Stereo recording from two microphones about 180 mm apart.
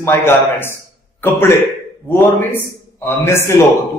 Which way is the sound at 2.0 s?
10° left (ahead or behind).